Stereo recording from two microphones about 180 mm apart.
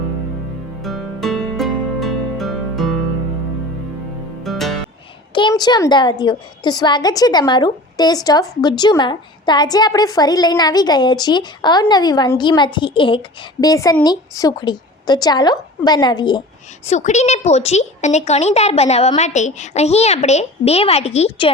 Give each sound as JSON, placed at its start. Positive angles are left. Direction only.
{"t": 0.8, "sound": "music", "side_deg": 0}
{"t": 4.4, "sound": "music", "side_deg": 0}
{"t": 5.3, "sound": "a woman's voice", "side_deg": 25}
{"t": 16.8, "sound": "speech", "side_deg": 40}